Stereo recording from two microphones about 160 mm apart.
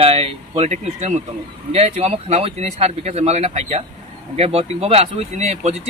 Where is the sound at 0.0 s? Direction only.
35° right (ahead or behind).